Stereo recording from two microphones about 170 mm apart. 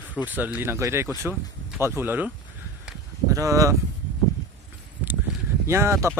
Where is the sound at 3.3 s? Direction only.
20° right (ahead or behind).